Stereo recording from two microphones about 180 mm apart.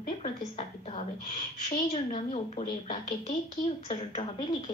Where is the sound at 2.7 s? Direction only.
50° left (ahead or behind).